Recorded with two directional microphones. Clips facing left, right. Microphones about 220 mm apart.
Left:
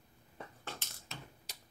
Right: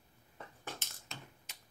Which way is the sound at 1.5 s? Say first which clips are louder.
Left 4 dB; 35° left (ahead or behind).